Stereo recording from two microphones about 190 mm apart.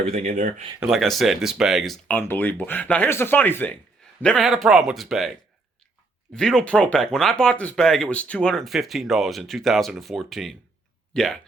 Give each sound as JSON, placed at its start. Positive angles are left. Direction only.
{"t": 0.0, "sound": "speech", "side_deg": -35}
{"t": 0.8, "sound": "speech", "side_deg": 0}